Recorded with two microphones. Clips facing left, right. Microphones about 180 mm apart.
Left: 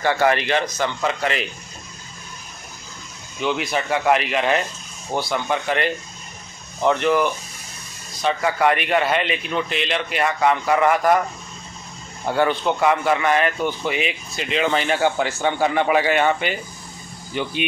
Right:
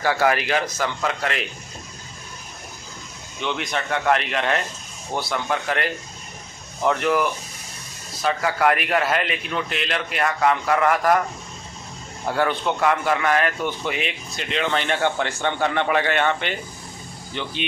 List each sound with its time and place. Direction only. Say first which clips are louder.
0.0 s speech: left 2 dB; 5° right (ahead or behind)
3.3 s speech: left 4 dB; 5° left (ahead or behind)
12.3 s speech: left 3 dB; centre (ahead or behind)